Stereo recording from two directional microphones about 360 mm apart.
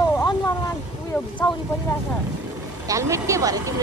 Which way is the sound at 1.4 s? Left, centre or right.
Centre.